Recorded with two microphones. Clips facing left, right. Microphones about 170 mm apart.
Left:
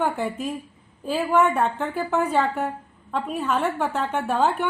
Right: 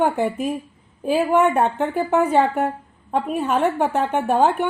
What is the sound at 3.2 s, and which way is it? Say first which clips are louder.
Speech: right 5 dB; 50° right (ahead or behind).